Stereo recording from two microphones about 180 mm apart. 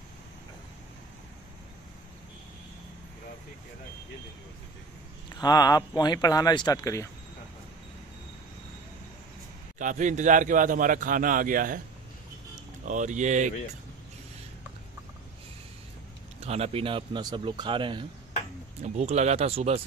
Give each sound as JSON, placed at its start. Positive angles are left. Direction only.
{"t": 5.3, "sound": "speech", "side_deg": 20}
{"t": 9.8, "sound": "a man's voice", "side_deg": -45}
{"t": 12.8, "sound": "a man's voice", "side_deg": -45}
{"t": 16.3, "sound": "speech", "side_deg": -35}
{"t": 18.8, "sound": "speech", "side_deg": -35}